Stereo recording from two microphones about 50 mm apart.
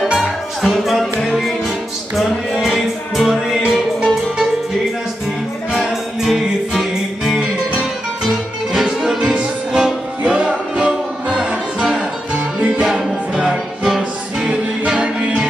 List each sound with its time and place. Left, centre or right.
0.6 s music: centre
2.5 s music: centre
3.2 s music: centre
6.3 s music: centre
8.8 s music: centre
10.2 s music: right
12.7 s music: centre
14.5 s music: centre